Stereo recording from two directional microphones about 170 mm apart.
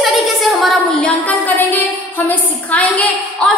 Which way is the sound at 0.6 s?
5° left (ahead or behind).